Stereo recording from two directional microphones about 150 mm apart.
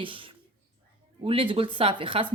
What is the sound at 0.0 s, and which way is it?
Speech, 35° right (ahead or behind).